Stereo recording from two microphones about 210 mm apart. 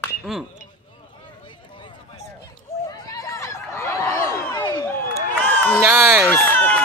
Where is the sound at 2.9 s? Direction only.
20° left (ahead or behind).